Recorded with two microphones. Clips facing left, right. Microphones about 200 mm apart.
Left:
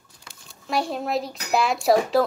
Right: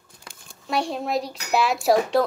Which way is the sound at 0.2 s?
50° right (ahead or behind).